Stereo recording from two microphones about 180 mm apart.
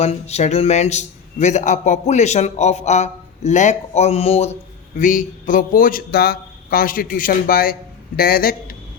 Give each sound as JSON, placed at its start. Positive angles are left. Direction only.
{"t": 0.0, "sound": "a man's voice", "side_deg": 35}
{"t": 4.9, "sound": "speech", "side_deg": 45}